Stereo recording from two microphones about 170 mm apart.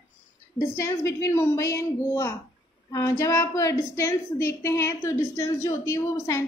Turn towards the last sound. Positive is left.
turn(degrees=20)  # may be behind; listen again after turning